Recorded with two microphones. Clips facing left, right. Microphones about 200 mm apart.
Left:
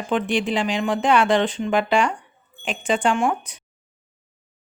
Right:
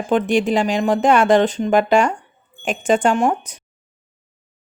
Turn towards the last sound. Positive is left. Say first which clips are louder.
# right 4 dB
turn(degrees=-40)  # may be behind; listen again after turning